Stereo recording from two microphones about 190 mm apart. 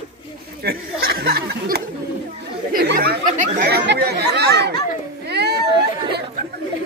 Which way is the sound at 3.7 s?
60° right (ahead or behind).